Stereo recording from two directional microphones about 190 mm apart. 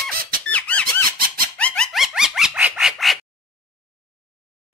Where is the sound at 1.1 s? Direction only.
50° right (ahead or behind).